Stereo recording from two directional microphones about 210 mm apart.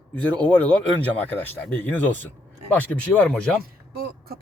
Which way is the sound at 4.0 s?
45° right (ahead or behind).